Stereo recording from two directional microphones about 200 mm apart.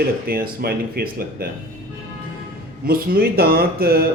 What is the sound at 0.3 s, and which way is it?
A man's voice, 50° right (ahead or behind).